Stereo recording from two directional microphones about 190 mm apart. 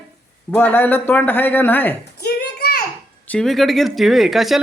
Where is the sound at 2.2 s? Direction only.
55° left (ahead or behind).